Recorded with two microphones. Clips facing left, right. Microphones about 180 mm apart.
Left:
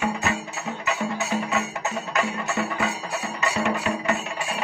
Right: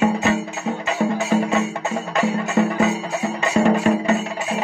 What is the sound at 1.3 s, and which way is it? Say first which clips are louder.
Music: right 9 dB; 45° right (ahead or behind).